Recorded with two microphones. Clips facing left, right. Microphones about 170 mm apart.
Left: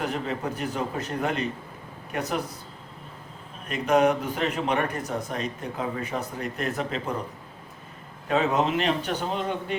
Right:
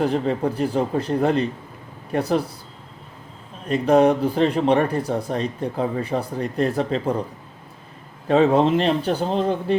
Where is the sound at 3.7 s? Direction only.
30° right (ahead or behind).